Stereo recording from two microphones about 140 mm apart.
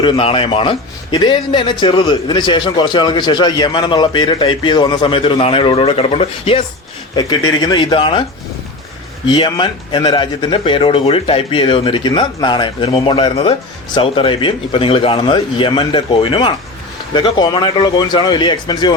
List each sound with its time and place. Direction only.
0.0 s a man's voice: 40° left (ahead or behind)
7.2 s a man's voice: 30° left (ahead or behind)
9.2 s a man's voice: 35° left (ahead or behind)